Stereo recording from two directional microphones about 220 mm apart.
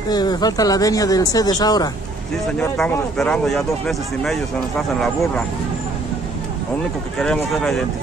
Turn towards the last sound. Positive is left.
turn(degrees=0)  # may be behind; listen again after turning